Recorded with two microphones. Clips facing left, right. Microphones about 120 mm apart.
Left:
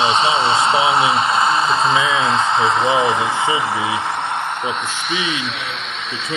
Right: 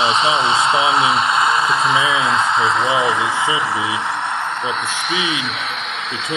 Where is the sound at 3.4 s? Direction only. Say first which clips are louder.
Left 1 dB; 50° left (ahead or behind).